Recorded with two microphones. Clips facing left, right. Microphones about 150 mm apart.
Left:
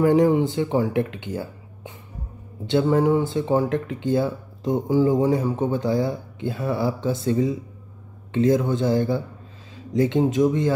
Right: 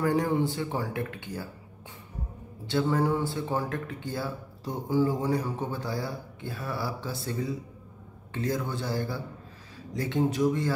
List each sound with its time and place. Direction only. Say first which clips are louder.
0.0 s a man's voice: left 8 dB; 20° left (ahead or behind)